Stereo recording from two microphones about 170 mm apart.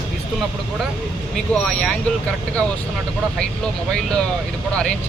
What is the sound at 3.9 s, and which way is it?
Speech, 5° left (ahead or behind).